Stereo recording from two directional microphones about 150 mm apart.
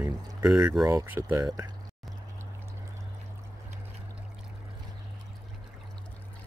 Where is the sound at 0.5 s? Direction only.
5° right (ahead or behind).